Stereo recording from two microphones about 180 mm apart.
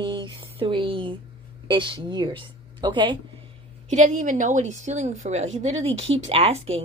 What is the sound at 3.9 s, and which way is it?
Speech, 45° right (ahead or behind).